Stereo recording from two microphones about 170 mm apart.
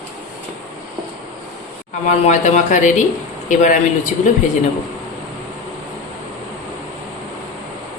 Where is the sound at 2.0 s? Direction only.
45° left (ahead or behind).